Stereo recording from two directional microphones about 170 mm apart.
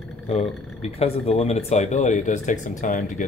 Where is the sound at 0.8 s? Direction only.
40° left (ahead or behind).